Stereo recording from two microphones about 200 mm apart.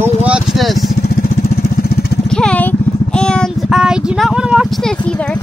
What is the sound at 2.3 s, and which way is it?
Child singing, 5° left (ahead or behind).